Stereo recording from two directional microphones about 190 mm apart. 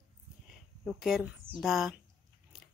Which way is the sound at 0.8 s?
Centre (ahead or behind).